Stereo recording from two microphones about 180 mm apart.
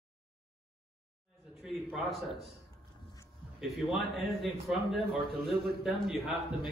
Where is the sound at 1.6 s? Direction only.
Centre (ahead or behind).